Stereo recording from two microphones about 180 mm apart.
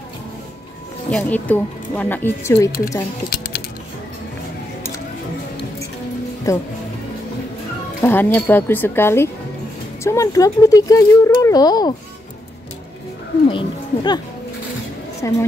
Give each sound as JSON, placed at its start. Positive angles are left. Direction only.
{"t": 1.1, "sound": "speech", "side_deg": 10}
{"t": 3.3, "sound": "music", "side_deg": 60}
{"t": 6.5, "sound": "speech", "side_deg": 15}
{"t": 8.0, "sound": "speech", "side_deg": 10}
{"t": 13.5, "sound": "speech", "side_deg": 25}
{"t": 15.2, "sound": "speech", "side_deg": 15}